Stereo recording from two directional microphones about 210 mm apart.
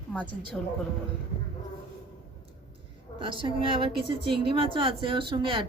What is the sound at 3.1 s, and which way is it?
A woman's voice, 25° right (ahead or behind).